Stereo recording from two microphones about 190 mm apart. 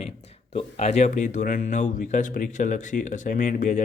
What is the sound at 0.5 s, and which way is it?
Speech, 35° left (ahead or behind).